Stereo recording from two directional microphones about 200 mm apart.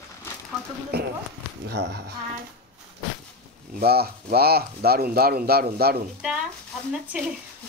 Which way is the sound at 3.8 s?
50° right (ahead or behind).